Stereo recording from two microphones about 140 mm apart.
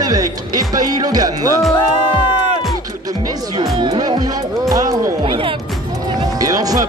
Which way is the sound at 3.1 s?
25° right (ahead or behind).